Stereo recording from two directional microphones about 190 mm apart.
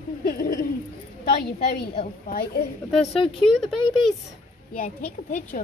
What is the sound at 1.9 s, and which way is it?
Speech, 50° left (ahead or behind).